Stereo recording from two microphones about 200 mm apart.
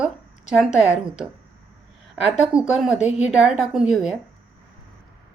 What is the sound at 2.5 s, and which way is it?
A woman's voice, 5° right (ahead or behind).